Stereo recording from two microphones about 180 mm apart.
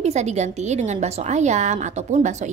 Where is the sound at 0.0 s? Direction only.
40° right (ahead or behind).